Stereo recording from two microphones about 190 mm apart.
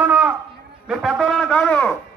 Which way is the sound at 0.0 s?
10° right (ahead or behind).